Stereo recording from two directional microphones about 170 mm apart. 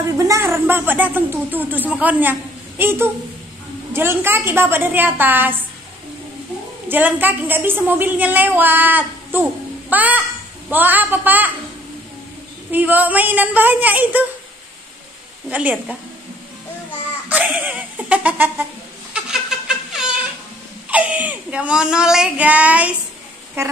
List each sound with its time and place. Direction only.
0.0 s a woman's voice: 20° right (ahead or behind)
6.9 s a woman's voice: 10° right (ahead or behind)
12.7 s a woman's voice: 10° right (ahead or behind)
15.5 s a woman's voice: 10° right (ahead or behind)
17.3 s giggle: 10° right (ahead or behind)
19.7 s a sound: 5° right (ahead or behind)
20.9 s a woman's voice: 10° right (ahead or behind)